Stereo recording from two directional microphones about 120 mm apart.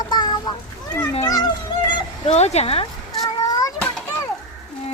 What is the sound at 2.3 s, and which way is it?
Speech, 65° left (ahead or behind).